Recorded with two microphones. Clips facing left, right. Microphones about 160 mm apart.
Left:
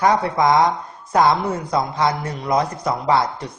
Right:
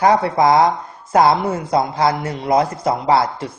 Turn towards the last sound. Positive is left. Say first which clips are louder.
# right 2 dB
turn(degrees=-30)  # may be behind; listen again after turning